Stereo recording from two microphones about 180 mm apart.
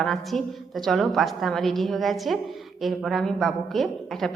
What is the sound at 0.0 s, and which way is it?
A woman's voice, centre (ahead or behind).